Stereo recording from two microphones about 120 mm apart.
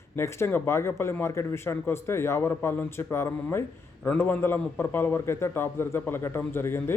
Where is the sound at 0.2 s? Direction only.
20° left (ahead or behind).